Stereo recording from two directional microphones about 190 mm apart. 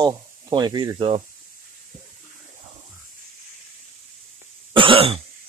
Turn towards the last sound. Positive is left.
turn(degrees=-30)  # may be behind; listen again after turning